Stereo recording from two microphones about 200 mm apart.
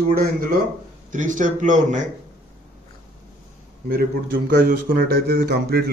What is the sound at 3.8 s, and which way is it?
Speech, 45° right (ahead or behind).